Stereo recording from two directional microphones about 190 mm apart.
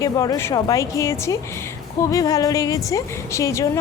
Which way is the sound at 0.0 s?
20° left (ahead or behind).